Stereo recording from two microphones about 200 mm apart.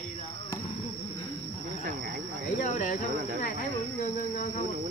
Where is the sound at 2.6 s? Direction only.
40° left (ahead or behind).